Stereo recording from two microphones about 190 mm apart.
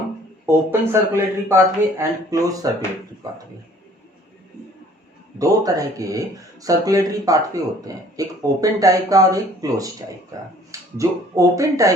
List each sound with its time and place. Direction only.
0.4 s speech: 15° right (ahead or behind)
5.4 s speech: 20° right (ahead or behind)